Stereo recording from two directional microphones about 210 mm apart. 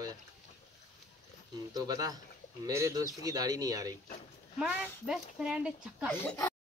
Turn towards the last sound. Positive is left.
turn(degrees=10)  # may be behind; listen again after turning